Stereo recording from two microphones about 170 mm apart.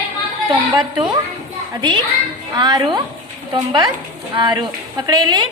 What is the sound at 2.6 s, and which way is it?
Speech, 25° right (ahead or behind).